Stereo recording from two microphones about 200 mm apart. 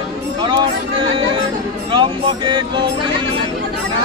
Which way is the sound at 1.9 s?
25° right (ahead or behind).